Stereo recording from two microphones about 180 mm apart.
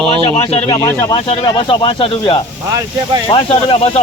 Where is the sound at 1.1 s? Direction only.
30° left (ahead or behind).